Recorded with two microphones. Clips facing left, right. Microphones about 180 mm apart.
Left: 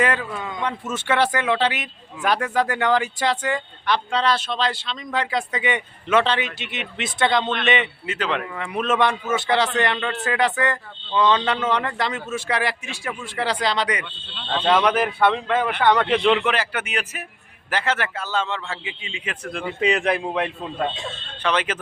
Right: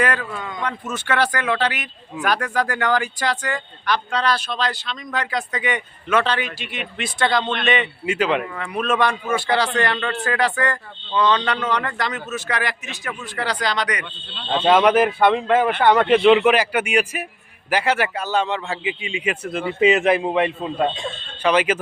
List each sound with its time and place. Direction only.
0.0 s speech: 25° left (ahead or behind)
0.3 s a man's voice: 10° left (ahead or behind)
0.6 s speech: 25° left (ahead or behind)
8.0 s a man's voice: 10° right (ahead or behind)
8.5 s speech: 20° left (ahead or behind)
14.5 s a man's voice: 10° right (ahead or behind)